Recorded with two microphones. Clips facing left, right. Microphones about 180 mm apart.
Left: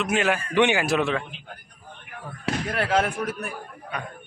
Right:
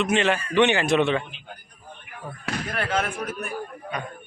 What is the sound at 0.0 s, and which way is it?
A man's voice, 5° left (ahead or behind).